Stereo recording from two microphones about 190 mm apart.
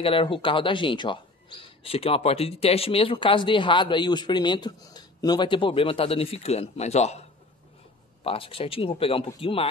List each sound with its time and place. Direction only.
0.0 s speech: 30° left (ahead or behind)